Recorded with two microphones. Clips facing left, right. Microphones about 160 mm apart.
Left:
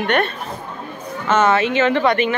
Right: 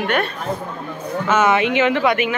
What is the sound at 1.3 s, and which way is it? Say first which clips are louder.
Speech: left 1 dB; 10° right (ahead or behind).